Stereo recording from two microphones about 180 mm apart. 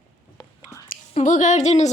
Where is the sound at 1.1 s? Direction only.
45° left (ahead or behind).